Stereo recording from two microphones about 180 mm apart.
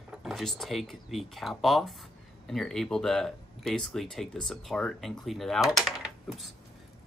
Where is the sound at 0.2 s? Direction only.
Centre (ahead or behind).